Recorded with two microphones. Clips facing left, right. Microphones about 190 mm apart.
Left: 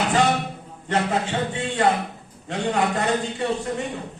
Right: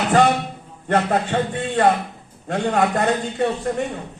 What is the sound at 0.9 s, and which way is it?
A man's voice, 55° right (ahead or behind).